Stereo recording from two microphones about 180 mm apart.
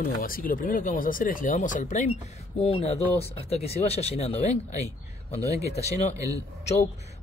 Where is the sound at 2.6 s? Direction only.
30° left (ahead or behind).